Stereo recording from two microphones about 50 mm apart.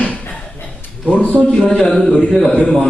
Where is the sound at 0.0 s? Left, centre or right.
Left.